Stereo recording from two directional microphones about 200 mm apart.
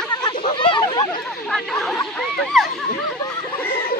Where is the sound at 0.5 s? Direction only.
25° left (ahead or behind).